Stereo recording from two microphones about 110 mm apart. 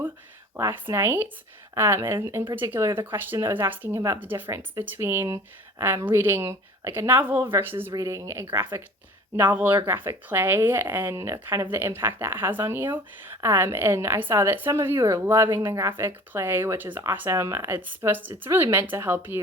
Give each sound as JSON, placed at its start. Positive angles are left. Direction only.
{"t": 0.5, "sound": "speech", "side_deg": -25}
{"t": 7.9, "sound": "speech", "side_deg": -30}